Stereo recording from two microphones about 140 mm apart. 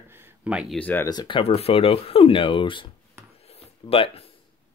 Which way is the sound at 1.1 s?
35° left (ahead or behind).